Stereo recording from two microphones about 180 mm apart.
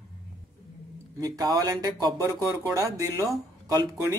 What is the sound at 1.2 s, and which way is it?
Speech, 20° right (ahead or behind).